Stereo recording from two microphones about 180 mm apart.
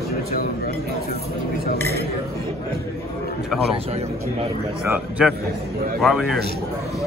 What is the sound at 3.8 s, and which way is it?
Speech, 35° right (ahead or behind).